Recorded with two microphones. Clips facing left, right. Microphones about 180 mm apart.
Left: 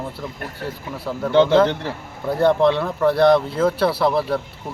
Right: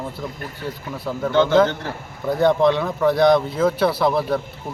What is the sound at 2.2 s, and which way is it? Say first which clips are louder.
Speech: even; 5° left (ahead or behind).